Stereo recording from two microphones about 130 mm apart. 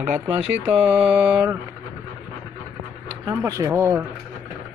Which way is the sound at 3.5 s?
25° right (ahead or behind).